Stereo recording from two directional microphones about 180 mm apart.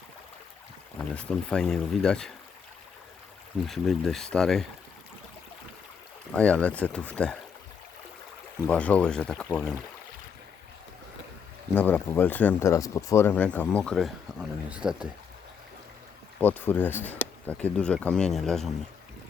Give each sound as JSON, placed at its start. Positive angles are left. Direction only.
{"t": 0.9, "sound": "speech", "side_deg": 5}
{"t": 3.7, "sound": "speech", "side_deg": 0}
{"t": 6.3, "sound": "speech", "side_deg": 5}
{"t": 8.6, "sound": "speech", "side_deg": 5}
{"t": 11.7, "sound": "speech", "side_deg": 10}
{"t": 16.4, "sound": "speech", "side_deg": 10}